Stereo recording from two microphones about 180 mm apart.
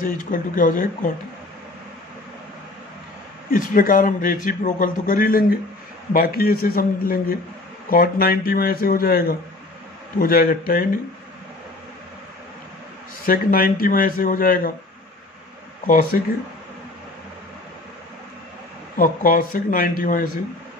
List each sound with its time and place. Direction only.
0.0 s a man's voice: 50° left (ahead or behind)
3.4 s a man's voice: 50° left (ahead or behind)
13.2 s a man's voice: 55° left (ahead or behind)
15.9 s a man's voice: 50° left (ahead or behind)
18.9 s a man's voice: 50° left (ahead or behind)